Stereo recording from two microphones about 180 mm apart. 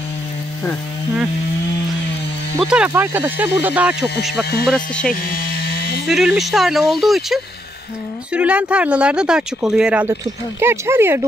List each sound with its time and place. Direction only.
2.6 s speech: 5° right (ahead or behind)
4.3 s speech: 65° left (ahead or behind)
4.6 s speech: 5° left (ahead or behind)
5.1 s a sound: 55° left (ahead or behind)
6.0 s speech: centre (ahead or behind)